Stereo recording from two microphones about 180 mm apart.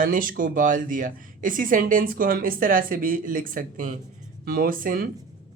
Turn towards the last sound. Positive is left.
turn(degrees=-50)  # may be behind; listen again after turning